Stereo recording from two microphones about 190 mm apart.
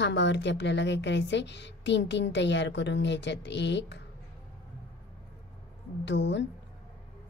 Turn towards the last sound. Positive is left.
turn(degrees=70)  # may be behind; listen again after turning